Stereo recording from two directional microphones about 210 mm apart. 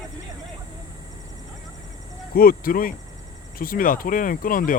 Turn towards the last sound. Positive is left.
turn(degrees=40)  # may be behind; listen again after turning